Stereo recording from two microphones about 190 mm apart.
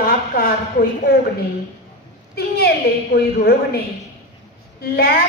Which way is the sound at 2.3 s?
55° left (ahead or behind).